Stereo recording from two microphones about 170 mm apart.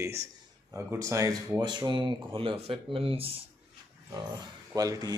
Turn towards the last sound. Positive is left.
turn(degrees=-20)  # may be behind; listen again after turning